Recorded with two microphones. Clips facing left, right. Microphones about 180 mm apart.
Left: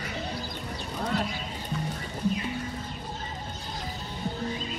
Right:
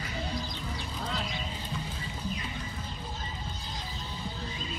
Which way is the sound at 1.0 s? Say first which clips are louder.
Left 8 dB; 60° left (ahead or behind).